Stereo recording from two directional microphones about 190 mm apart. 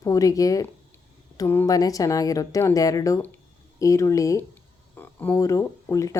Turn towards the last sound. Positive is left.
turn(degrees=15)  # may be behind; listen again after turning